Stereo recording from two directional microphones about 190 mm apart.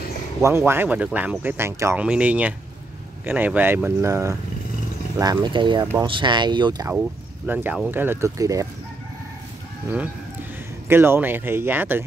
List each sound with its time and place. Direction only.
0.4 s speech: 15° right (ahead or behind)
7.4 s speech: 10° right (ahead or behind)
10.9 s speech: 10° right (ahead or behind)